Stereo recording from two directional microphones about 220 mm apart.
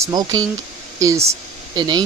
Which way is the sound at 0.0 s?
15° right (ahead or behind).